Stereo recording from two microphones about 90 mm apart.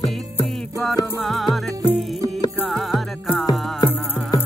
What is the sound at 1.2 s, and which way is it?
Music, centre (ahead or behind).